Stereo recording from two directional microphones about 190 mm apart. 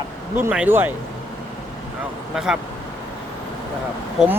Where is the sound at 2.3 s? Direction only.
5° right (ahead or behind).